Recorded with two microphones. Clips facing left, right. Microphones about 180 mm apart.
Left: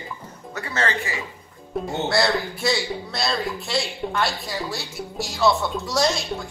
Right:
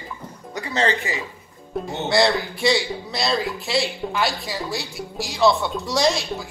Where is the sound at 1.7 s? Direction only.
Centre (ahead or behind).